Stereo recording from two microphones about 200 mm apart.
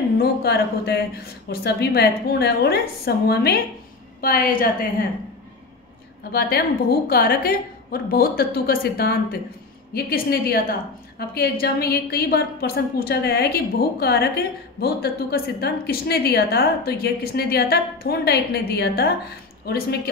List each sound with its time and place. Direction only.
0.2 s a woman's voice: 55° left (ahead or behind)
6.3 s a woman's voice: 50° left (ahead or behind)